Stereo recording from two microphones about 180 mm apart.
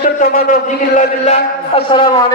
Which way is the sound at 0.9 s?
40° left (ahead or behind).